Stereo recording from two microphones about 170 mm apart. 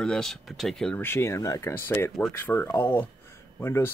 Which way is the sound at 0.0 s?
5° left (ahead or behind).